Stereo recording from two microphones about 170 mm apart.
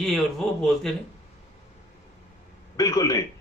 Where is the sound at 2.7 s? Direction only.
20° left (ahead or behind).